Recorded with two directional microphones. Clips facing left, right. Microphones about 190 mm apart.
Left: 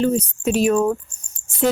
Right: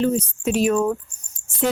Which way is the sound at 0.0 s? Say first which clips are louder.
Left 1 dB; 35° left (ahead or behind).